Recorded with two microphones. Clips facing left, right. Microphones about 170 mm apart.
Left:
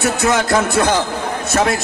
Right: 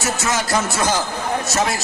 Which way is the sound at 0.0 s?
60° left (ahead or behind).